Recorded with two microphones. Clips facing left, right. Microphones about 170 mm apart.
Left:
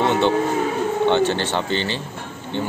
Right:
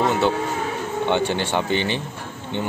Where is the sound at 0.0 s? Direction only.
5° right (ahead or behind).